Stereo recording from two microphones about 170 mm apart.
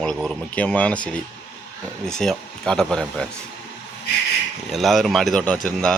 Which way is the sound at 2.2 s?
5° left (ahead or behind).